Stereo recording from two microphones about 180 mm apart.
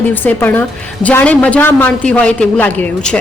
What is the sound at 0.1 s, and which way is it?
A man's voice, 10° left (ahead or behind).